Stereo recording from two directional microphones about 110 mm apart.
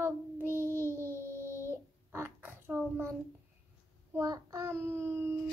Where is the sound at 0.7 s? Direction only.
25° left (ahead or behind).